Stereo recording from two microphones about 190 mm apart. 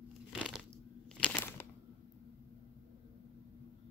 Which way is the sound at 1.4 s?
10° left (ahead or behind).